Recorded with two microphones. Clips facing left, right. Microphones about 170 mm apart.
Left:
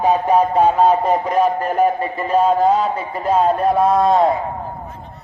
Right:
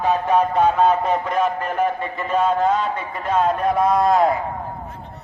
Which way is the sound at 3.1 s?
35° left (ahead or behind).